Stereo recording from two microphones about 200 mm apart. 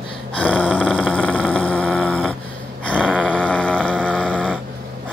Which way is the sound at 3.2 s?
5° left (ahead or behind).